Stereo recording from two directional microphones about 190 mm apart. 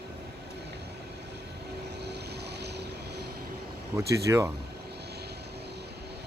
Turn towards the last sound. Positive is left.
turn(degrees=-15)  # may be behind; listen again after turning